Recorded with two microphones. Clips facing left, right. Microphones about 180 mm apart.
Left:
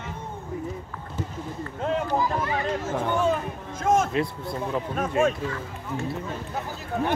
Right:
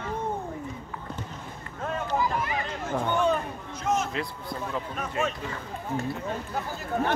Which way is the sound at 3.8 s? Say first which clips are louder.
Left 5 dB; 50° left (ahead or behind).